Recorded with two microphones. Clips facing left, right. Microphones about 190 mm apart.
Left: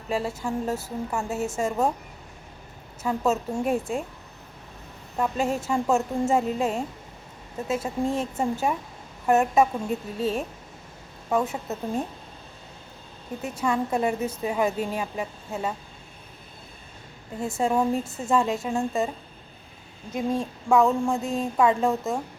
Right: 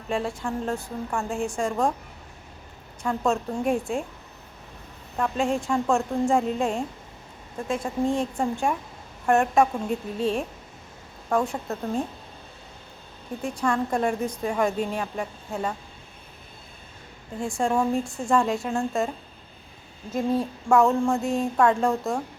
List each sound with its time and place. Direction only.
0.1 s a woman's voice: 5° left (ahead or behind)
3.0 s a woman's voice: 5° left (ahead or behind)
5.1 s a woman's voice: 5° left (ahead or behind)
13.4 s a woman's voice: 5° left (ahead or behind)
17.4 s a woman's voice: 5° left (ahead or behind)
20.1 s a woman's voice: centre (ahead or behind)